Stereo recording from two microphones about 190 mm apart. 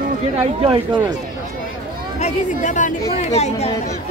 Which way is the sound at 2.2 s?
40° left (ahead or behind).